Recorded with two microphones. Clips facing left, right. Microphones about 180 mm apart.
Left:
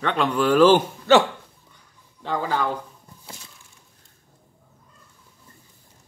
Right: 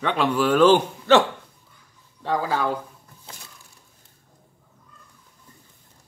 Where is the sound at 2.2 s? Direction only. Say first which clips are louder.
Right 1 dB; 5° right (ahead or behind).